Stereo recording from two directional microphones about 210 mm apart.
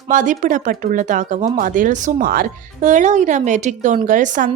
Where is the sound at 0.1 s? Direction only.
40° right (ahead or behind).